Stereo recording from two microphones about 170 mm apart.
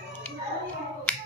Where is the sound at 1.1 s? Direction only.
10° left (ahead or behind).